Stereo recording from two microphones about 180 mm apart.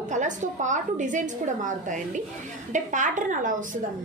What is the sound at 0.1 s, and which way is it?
A woman's voice, 45° right (ahead or behind).